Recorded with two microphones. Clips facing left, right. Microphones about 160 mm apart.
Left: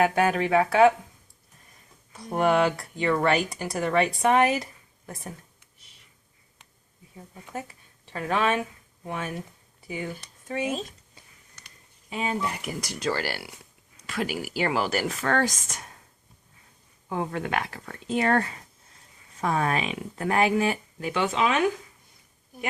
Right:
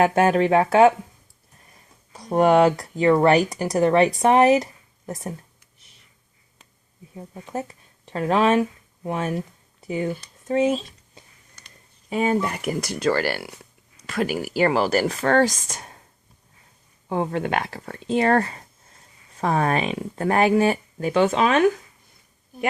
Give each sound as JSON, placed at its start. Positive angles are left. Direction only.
{"t": 0.0, "sound": "speech", "side_deg": -40}
{"t": 2.1, "sound": "speech", "side_deg": -40}
{"t": 8.1, "sound": "speech", "side_deg": -35}
{"t": 12.1, "sound": "speech", "side_deg": -50}
{"t": 17.1, "sound": "speech", "side_deg": -30}